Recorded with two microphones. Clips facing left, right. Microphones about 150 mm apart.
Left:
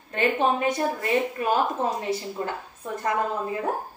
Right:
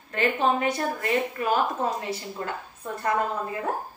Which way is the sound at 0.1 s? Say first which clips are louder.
Left 1 dB; 20° left (ahead or behind).